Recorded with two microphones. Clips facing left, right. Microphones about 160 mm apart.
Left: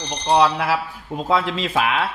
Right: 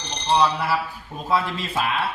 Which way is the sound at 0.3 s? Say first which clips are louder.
Left 3 dB; 85° left.